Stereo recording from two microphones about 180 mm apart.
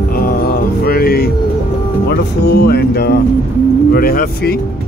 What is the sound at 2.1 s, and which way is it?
Speech, 60° left (ahead or behind).